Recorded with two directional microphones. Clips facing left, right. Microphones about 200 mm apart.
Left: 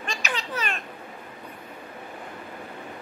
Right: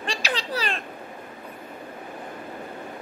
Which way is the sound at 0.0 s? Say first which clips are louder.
Right 3 dB; 35° right (ahead or behind).